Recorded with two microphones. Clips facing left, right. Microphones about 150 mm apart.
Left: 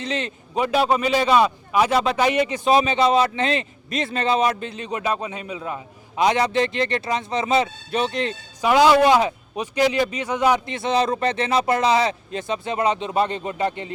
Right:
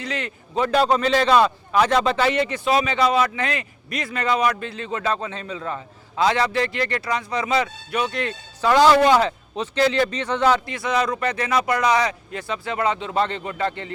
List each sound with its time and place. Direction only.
0.0 s a man's voice: 20° left (ahead or behind)
8.7 s a man's voice: 10° left (ahead or behind)
10.7 s a man's voice: 25° left (ahead or behind)